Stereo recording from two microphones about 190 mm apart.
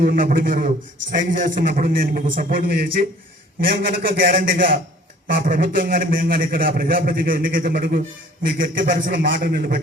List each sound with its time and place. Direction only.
0.0 s a man's voice: 50° right (ahead or behind)